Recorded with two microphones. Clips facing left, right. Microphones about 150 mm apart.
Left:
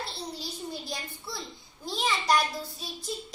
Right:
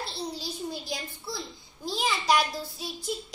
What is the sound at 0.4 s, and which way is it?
A child's voice, centre (ahead or behind).